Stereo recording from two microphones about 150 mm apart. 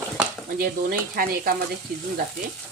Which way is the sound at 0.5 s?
75° right (ahead or behind).